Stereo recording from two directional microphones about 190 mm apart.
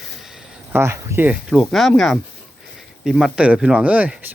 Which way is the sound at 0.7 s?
15° right (ahead or behind).